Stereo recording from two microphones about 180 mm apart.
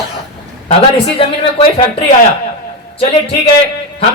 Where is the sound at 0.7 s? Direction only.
30° left (ahead or behind).